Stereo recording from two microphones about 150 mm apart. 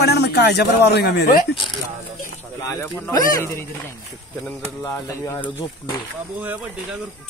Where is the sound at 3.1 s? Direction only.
25° left (ahead or behind).